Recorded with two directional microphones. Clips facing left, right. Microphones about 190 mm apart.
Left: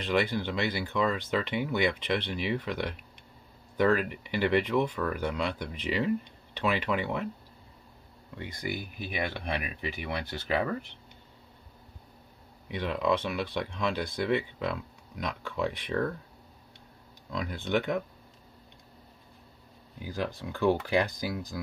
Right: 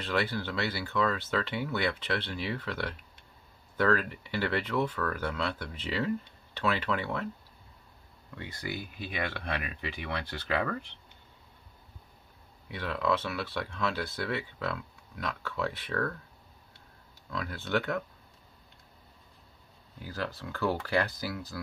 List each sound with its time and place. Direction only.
0.0 s speech: 15° left (ahead or behind)
8.4 s speech: 15° left (ahead or behind)
12.6 s speech: 20° left (ahead or behind)
17.3 s speech: 20° left (ahead or behind)
20.0 s speech: 15° left (ahead or behind)